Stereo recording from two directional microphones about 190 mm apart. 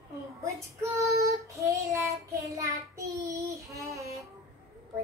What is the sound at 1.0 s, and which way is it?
Child singing, 15° right (ahead or behind).